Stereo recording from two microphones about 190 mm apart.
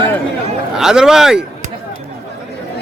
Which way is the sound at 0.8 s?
5° right (ahead or behind).